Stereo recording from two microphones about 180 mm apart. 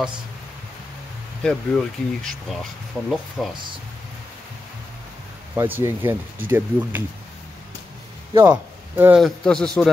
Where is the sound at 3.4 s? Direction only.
5° left (ahead or behind).